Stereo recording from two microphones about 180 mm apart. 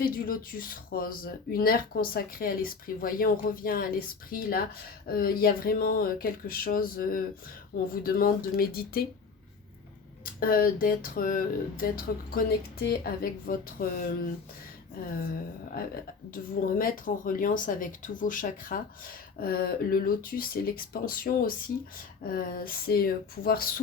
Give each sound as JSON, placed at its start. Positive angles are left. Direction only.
{"t": 0.0, "sound": "speech", "side_deg": 50}
{"t": 10.2, "sound": "speech", "side_deg": 50}
{"t": 15.2, "sound": "speech", "side_deg": 55}